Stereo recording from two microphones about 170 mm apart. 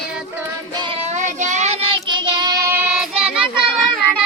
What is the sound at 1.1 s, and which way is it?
Child singing, 45° right (ahead or behind).